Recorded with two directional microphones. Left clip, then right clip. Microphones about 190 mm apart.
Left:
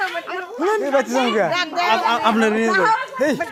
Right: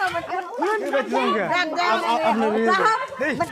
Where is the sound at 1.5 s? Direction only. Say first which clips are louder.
Left 1 dB; 20° left (ahead or behind).